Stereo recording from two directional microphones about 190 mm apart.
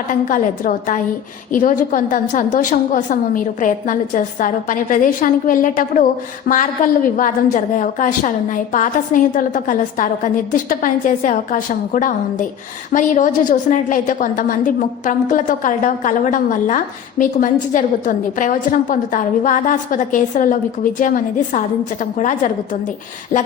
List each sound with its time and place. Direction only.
0.1 s a woman's voice: 45° left (ahead or behind)